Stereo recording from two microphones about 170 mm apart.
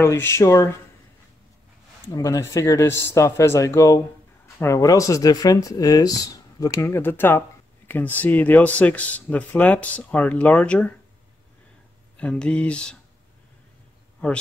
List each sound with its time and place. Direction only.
0.0 s speech: 15° left (ahead or behind)
2.1 s speech: 20° left (ahead or behind)
12.2 s speech: 5° left (ahead or behind)
14.2 s speech: 10° left (ahead or behind)